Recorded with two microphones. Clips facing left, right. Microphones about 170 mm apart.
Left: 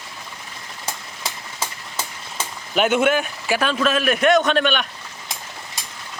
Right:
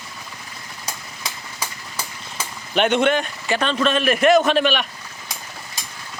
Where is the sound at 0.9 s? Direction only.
25° left (ahead or behind).